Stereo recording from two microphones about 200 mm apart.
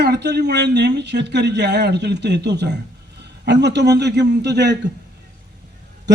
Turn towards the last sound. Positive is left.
turn(degrees=-60)  # may be behind; listen again after turning